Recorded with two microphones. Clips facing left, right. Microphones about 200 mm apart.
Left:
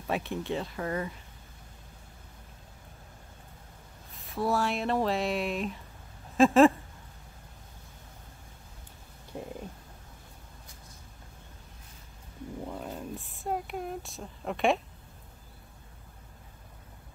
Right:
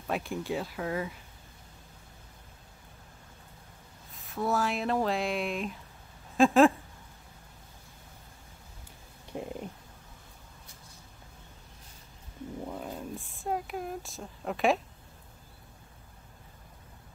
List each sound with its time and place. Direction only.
0.0 s speech: centre (ahead or behind)
4.1 s speech: centre (ahead or behind)
6.3 s a sound: centre (ahead or behind)
9.3 s stomach rumble: 20° right (ahead or behind)
12.6 s a sound: centre (ahead or behind)
12.9 s speech: centre (ahead or behind)